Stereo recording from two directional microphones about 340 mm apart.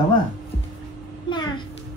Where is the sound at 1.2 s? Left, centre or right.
Centre.